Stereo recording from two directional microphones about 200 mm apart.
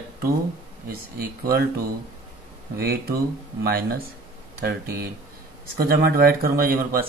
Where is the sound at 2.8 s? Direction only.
50° right (ahead or behind).